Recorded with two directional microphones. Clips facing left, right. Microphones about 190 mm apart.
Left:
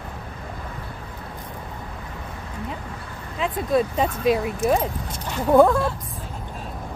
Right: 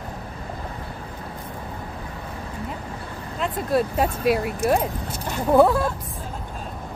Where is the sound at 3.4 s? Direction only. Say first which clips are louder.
Left 1 dB; 5° right (ahead or behind).